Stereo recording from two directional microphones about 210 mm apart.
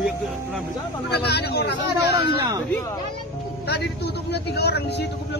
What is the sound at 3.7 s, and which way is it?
A man's voice, 50° left (ahead or behind).